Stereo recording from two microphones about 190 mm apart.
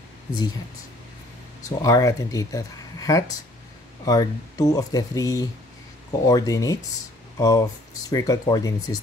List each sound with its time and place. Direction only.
1.6 s speech: 15° left (ahead or behind)